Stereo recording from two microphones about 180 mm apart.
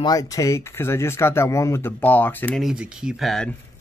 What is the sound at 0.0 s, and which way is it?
Speech, 20° left (ahead or behind).